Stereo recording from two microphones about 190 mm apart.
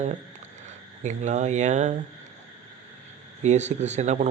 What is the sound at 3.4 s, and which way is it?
Speech, 35° right (ahead or behind).